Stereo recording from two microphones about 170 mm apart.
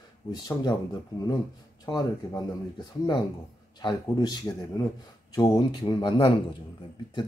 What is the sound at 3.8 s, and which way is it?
Speech, 25° left (ahead or behind).